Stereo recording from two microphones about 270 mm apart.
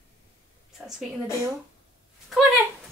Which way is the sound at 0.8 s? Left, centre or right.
Centre.